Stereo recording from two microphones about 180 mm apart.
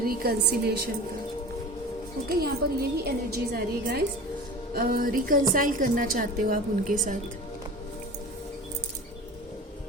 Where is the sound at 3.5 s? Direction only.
60° right (ahead or behind).